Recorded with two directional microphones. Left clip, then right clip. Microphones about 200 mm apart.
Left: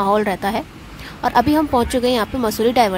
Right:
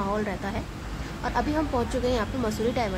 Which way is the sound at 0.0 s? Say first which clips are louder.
Left 12 dB; 40° left (ahead or behind).